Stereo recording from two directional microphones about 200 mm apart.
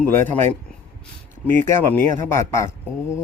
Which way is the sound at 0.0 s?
10° left (ahead or behind).